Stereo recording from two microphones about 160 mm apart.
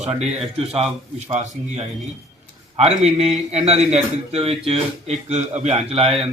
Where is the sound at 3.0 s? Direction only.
45° right (ahead or behind).